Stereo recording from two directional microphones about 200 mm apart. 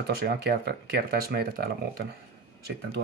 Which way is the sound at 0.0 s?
55° right (ahead or behind).